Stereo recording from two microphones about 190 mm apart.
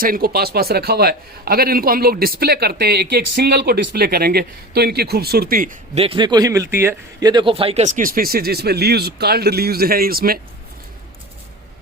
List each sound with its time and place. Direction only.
0.0 s a man's voice: 50° right (ahead or behind)
5.9 s a man's voice: 30° right (ahead or behind); by 10.4 s 50° right (ahead or behind)